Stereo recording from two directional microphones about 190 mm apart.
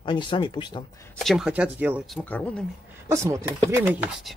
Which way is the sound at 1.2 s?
Centre (ahead or behind).